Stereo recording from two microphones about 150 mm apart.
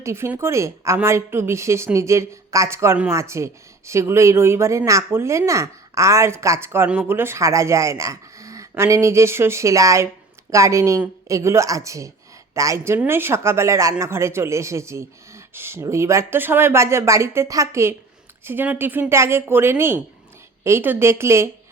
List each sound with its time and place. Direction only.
0.0 s a woman's voice: 15° right (ahead or behind)